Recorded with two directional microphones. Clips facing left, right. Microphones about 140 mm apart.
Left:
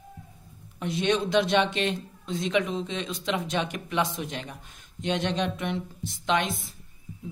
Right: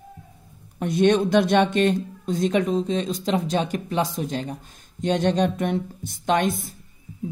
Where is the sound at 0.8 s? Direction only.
50° right (ahead or behind).